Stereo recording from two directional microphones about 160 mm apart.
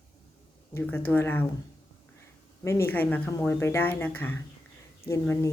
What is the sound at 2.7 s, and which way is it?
Speech, 15° left (ahead or behind).